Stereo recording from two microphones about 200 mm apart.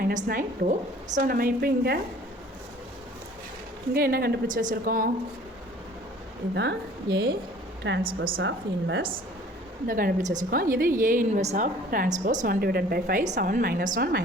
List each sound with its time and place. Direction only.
0.0 s a woman's voice: 45° right (ahead or behind)
3.9 s a woman's voice: 50° right (ahead or behind)
6.5 s a woman's voice: 60° right (ahead or behind)
7.9 s a woman's voice: 45° right (ahead or behind)
8.4 s a woman's voice: 65° right (ahead or behind)
9.8 s a woman's voice: 45° right (ahead or behind)